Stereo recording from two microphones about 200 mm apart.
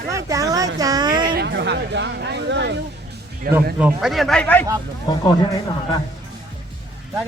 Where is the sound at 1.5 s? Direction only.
60° right (ahead or behind).